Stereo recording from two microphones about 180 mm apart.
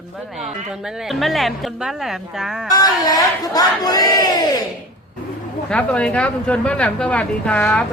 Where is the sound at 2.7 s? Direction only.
20° left (ahead or behind).